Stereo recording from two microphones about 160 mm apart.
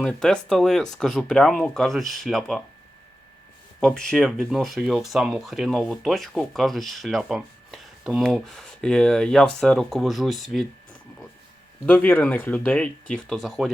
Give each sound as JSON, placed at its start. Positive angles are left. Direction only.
{"t": 0.0, "sound": "speech", "side_deg": 5}
{"t": 3.8, "sound": "speech", "side_deg": 5}
{"t": 11.9, "sound": "speech", "side_deg": 10}